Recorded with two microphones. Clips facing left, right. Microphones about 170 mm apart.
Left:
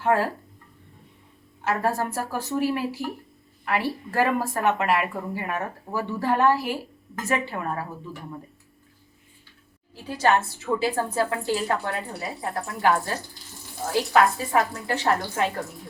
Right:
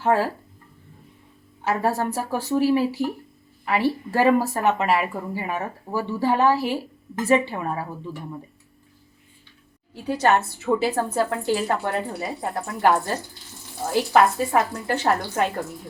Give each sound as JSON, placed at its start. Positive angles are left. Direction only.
{"t": 0.0, "sound": "speech", "side_deg": 0}
{"t": 1.6, "sound": "speech", "side_deg": 0}
{"t": 7.2, "sound": "a woman's voice", "side_deg": -30}
{"t": 7.4, "sound": "speech", "side_deg": 0}
{"t": 10.2, "sound": "speech", "side_deg": 0}